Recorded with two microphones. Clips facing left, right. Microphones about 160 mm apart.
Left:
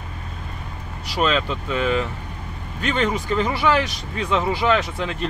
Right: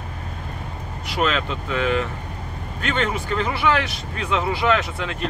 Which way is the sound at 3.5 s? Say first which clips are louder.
Left 1 dB; 35° left (ahead or behind).